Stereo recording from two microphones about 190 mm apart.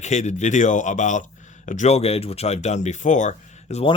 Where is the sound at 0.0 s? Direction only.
40° left (ahead or behind).